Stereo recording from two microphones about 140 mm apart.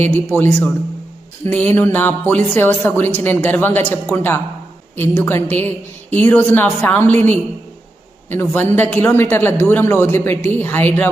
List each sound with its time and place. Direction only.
0.3 s a man's voice: 20° right (ahead or behind)
1.5 s a woman's voice: 15° left (ahead or behind)